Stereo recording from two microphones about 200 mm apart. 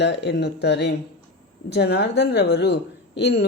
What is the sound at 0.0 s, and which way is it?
A woman's voice, 60° left (ahead or behind).